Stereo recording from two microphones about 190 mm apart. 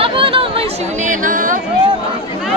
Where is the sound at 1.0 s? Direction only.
45° right (ahead or behind).